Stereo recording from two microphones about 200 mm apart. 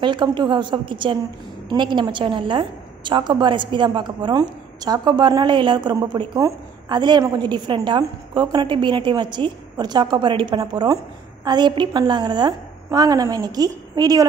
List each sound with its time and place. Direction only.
0.0 s a woman's voice: 25° right (ahead or behind)